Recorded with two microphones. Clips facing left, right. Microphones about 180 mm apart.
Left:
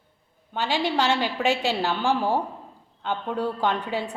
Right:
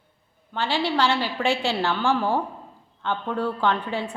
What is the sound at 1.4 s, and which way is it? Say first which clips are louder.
Speech: right 1 dB; 40° left (ahead or behind).